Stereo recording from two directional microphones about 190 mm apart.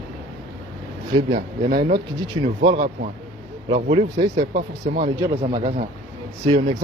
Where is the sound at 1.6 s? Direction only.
50° right (ahead or behind).